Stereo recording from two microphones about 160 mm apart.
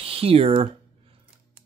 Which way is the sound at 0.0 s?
35° right (ahead or behind).